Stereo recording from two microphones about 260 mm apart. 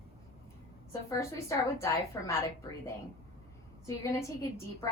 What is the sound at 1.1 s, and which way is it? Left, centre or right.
A woman's voice, centre.